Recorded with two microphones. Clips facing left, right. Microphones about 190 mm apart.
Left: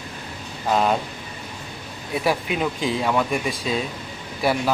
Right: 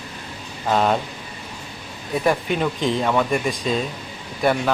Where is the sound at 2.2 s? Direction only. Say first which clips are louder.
Right 2 dB; 5° left (ahead or behind).